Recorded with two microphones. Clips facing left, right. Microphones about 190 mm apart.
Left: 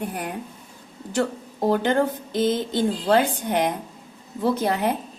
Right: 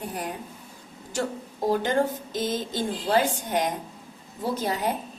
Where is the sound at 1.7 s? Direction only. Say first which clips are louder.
Left 2 dB; 60° left (ahead or behind).